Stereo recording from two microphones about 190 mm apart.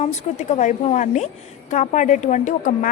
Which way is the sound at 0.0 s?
40° left (ahead or behind).